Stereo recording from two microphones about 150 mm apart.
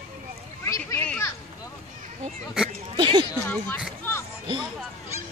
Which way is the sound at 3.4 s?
10° left (ahead or behind).